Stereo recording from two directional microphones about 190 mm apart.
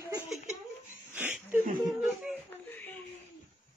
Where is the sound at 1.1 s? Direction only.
10° right (ahead or behind).